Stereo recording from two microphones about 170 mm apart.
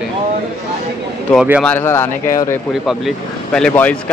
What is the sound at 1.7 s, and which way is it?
Speech, 15° left (ahead or behind).